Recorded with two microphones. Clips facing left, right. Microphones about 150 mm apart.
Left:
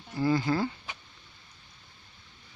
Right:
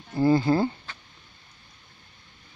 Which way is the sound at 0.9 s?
15° left (ahead or behind).